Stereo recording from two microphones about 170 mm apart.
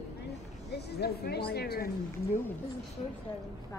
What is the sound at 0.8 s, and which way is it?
Speech, 70° left (ahead or behind).